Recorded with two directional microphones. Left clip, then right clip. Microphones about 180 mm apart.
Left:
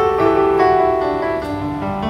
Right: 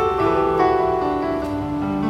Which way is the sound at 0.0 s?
25° left (ahead or behind).